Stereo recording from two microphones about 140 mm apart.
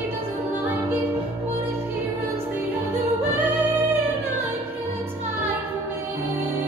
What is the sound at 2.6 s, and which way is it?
Music, 15° right (ahead or behind).